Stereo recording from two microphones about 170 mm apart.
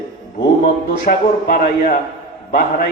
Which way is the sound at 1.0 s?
55° left (ahead or behind).